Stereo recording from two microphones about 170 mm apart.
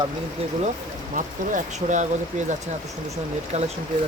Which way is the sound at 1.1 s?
50° right (ahead or behind).